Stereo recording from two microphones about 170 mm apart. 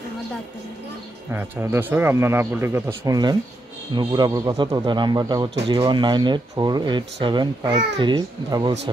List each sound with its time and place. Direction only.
1.3 s a man's voice: 15° right (ahead or behind)